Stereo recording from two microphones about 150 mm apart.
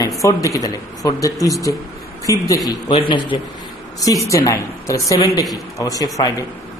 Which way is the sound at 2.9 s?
35° left (ahead or behind).